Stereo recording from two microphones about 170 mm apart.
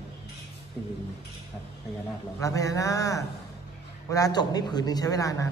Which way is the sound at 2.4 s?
20° left (ahead or behind).